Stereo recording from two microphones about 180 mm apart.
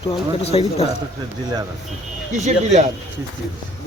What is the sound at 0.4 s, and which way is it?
Speech, 35° left (ahead or behind).